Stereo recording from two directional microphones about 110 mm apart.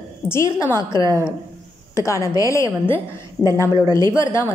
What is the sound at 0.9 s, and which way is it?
Speech, 40° right (ahead or behind).